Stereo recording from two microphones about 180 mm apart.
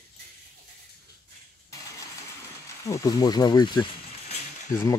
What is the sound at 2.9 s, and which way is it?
Speech, 20° left (ahead or behind).